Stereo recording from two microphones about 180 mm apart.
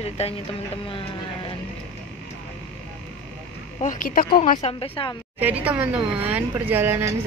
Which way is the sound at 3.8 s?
50° left (ahead or behind).